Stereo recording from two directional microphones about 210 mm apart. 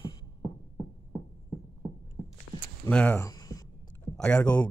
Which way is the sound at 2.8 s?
5° left (ahead or behind).